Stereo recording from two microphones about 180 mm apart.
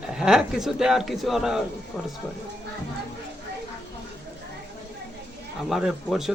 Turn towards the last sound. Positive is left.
turn(degrees=0)  # may be behind; listen again after turning